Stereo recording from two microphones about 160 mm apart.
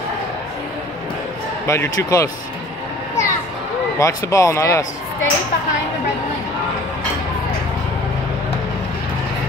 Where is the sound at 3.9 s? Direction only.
20° left (ahead or behind).